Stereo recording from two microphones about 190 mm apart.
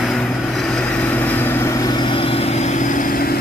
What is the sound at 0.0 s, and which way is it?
Vehicle, centre (ahead or behind).